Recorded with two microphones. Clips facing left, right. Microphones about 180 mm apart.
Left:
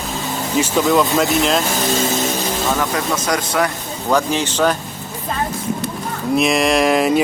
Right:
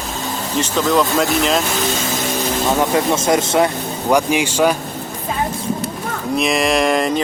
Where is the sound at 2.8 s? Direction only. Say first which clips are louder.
Right 4 dB; 25° right (ahead or behind).